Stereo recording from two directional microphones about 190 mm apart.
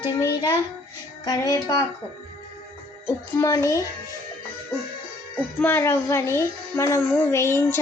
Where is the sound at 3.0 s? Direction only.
15° left (ahead or behind).